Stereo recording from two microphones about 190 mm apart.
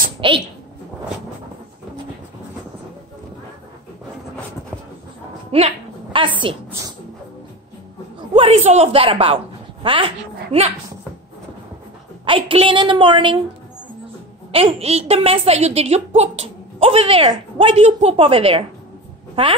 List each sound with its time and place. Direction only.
0.2 s a woman's voice: 25° right (ahead or behind)
5.5 s a woman's voice: 30° right (ahead or behind)
8.2 s a woman's voice: 30° right (ahead or behind)
12.3 s a woman's voice: 30° right (ahead or behind)
14.5 s a woman's voice: 30° right (ahead or behind)